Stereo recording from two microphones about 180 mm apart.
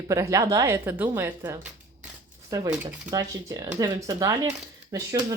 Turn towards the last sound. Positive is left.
turn(degrees=-20)  # may be behind; listen again after turning